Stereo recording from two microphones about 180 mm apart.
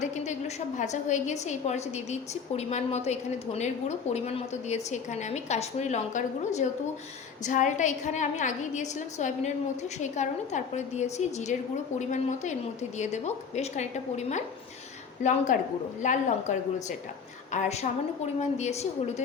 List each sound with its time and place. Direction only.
0.0 s a woman's voice: 40° left (ahead or behind)